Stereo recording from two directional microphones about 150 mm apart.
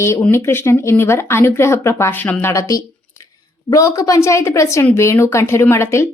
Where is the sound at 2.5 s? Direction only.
20° left (ahead or behind).